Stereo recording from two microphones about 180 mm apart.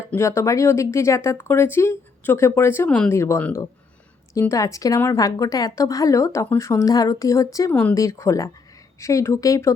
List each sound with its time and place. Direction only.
0.1 s a woman's voice: 15° left (ahead or behind)